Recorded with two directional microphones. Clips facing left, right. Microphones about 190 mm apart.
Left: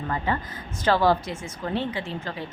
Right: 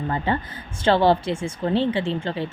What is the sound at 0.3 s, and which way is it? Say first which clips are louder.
A woman's voice: right 3 dB; 30° right (ahead or behind).